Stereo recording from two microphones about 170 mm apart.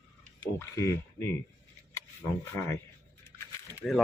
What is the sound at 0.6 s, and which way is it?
Speech, 15° left (ahead or behind).